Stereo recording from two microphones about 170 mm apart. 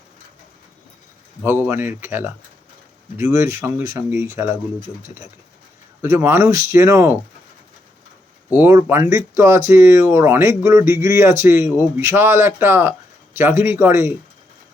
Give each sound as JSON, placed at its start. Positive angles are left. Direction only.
{"t": 1.4, "sound": "speech", "side_deg": -10}
{"t": 6.0, "sound": "speech", "side_deg": -15}
{"t": 8.5, "sound": "speech", "side_deg": -15}